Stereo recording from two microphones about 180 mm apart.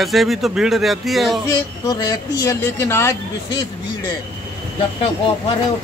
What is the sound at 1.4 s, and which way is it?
Speech, 20° left (ahead or behind).